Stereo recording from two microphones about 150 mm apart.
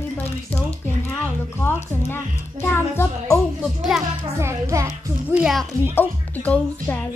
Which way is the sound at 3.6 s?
Centre (ahead or behind).